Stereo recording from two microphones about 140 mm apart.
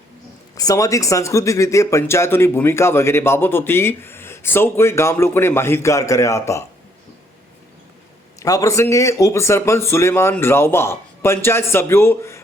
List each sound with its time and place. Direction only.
0.5 s speech: 25° left (ahead or behind)
8.4 s speech: 25° left (ahead or behind)